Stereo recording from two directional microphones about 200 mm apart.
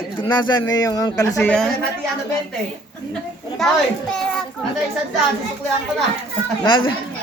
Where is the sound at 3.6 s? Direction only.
Centre (ahead or behind).